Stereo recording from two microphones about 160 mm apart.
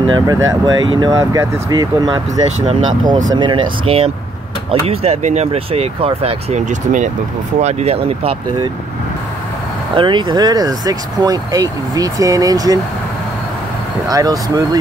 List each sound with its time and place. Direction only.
0.1 s speech: 20° right (ahead or behind)
9.9 s speech: 30° right (ahead or behind)
14.0 s speech: 25° right (ahead or behind)